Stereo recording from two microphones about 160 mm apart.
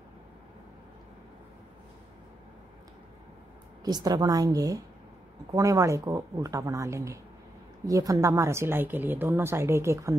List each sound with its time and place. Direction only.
3.8 s speech: 25° right (ahead or behind)